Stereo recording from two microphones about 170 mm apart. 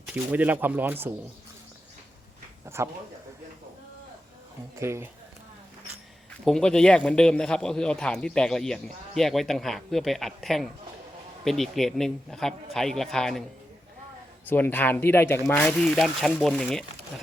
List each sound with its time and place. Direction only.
0.1 s speech: 10° right (ahead or behind)
2.6 s speech: 15° right (ahead or behind)
4.8 s speech: 15° right (ahead or behind)
6.4 s a man's voice: 5° left (ahead or behind)
14.4 s a man's voice: 10° left (ahead or behind)